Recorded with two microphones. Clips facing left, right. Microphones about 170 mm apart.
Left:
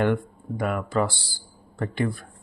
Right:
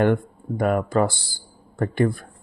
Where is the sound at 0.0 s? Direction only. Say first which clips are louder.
Right 3 dB; 45° right (ahead or behind).